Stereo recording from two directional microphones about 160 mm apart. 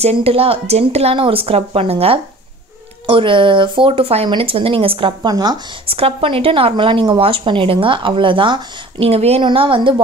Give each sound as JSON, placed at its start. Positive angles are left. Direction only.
{"t": 0.0, "sound": "a woman's voice", "side_deg": -40}
{"t": 5.9, "sound": "a woman's voice", "side_deg": -35}